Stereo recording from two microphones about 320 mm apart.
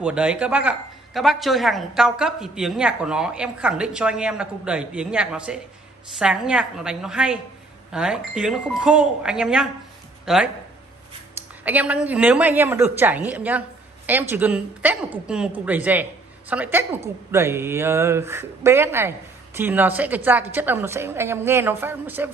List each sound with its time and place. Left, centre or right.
0.0 s speech: centre
11.6 s speech: centre